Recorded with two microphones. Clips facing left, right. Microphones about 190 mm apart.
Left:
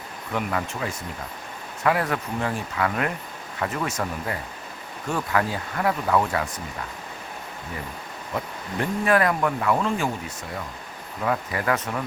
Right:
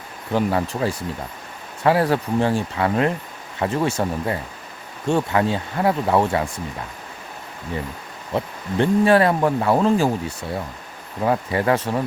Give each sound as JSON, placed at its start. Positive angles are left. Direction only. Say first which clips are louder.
{"t": 0.3, "sound": "speech", "louder": "right 7 dB", "side_deg": -30}
{"t": 8.3, "sound": "speech", "louder": "right 7 dB", "side_deg": -30}